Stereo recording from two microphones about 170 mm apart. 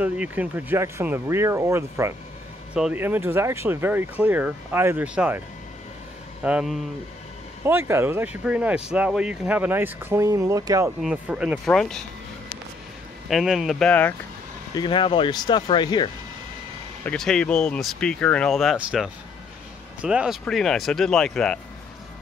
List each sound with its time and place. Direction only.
0.0 s speech: 10° right (ahead or behind)
6.4 s speech: 5° right (ahead or behind)
7.6 s speech: 15° right (ahead or behind)
11.0 s speech: 5° right (ahead or behind)
13.3 s speech: centre (ahead or behind)
14.7 s speech: 25° left (ahead or behind)
17.0 s speech: 5° left (ahead or behind)